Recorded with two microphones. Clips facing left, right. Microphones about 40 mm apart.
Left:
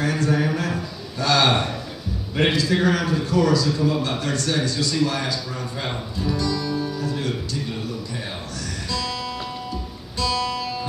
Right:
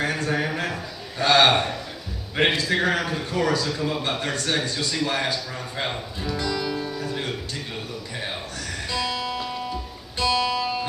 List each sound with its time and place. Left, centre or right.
0.0 s a sound: right
0.6 s a man's voice: right
6.3 s music: right
8.9 s music: right